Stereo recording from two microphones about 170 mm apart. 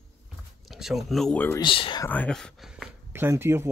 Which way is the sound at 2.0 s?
10° left (ahead or behind).